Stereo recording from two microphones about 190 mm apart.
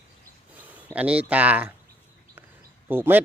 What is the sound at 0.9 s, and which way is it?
Speech, 5° right (ahead or behind).